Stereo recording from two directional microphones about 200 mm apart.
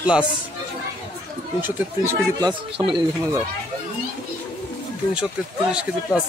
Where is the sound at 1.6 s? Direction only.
15° right (ahead or behind).